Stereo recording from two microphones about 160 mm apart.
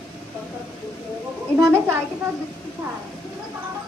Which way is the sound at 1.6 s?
15° right (ahead or behind).